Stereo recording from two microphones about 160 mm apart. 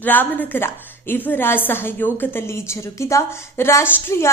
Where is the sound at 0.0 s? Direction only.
10° left (ahead or behind).